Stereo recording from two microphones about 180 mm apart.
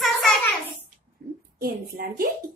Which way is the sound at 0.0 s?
Centre (ahead or behind).